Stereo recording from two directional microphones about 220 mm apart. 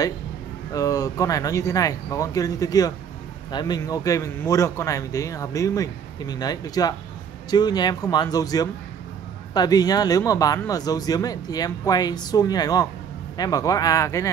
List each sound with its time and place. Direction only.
0.7 s speech: 15° left (ahead or behind)